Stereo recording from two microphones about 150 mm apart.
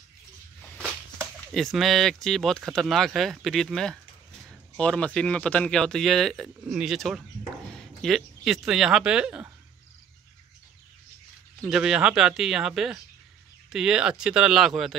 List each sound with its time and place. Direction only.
1.5 s speech: centre (ahead or behind)
11.6 s speech: 5° right (ahead or behind)